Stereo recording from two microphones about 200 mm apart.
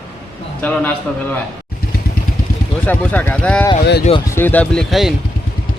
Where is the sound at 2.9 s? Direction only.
10° left (ahead or behind).